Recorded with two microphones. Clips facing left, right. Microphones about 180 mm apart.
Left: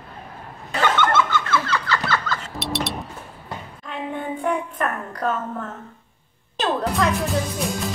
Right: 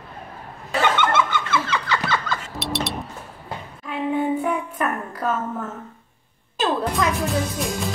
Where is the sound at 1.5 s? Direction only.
15° right (ahead or behind).